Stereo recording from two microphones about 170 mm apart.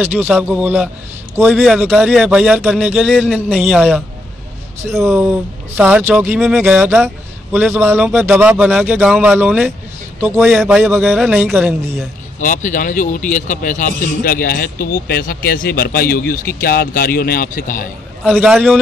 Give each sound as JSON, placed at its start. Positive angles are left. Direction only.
{"t": 0.0, "sound": "a man's voice", "side_deg": -10}
{"t": 5.1, "sound": "speech", "side_deg": -5}
{"t": 12.4, "sound": "speech", "side_deg": 50}
{"t": 18.2, "sound": "a man's voice", "side_deg": 0}